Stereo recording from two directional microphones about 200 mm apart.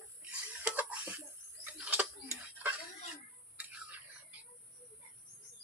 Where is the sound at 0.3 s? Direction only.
5° right (ahead or behind).